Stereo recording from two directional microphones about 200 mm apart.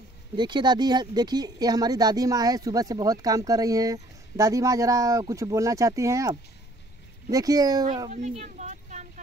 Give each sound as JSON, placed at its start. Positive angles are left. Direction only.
{"t": 0.4, "sound": "speech", "side_deg": -20}
{"t": 8.1, "sound": "speech", "side_deg": -35}